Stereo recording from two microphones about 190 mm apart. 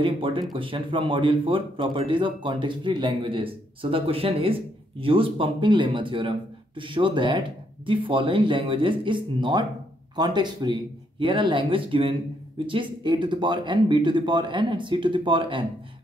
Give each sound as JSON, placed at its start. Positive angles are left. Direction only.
{"t": 0.0, "sound": "speech", "side_deg": -25}